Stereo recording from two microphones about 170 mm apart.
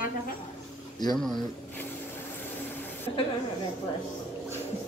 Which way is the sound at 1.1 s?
Centre (ahead or behind).